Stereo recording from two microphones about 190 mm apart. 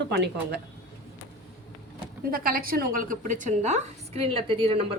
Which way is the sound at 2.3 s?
50° right (ahead or behind).